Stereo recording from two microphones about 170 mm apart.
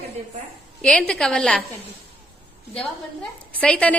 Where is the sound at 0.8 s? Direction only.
5° left (ahead or behind).